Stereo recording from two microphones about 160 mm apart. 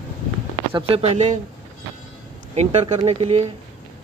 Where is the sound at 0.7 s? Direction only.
35° right (ahead or behind).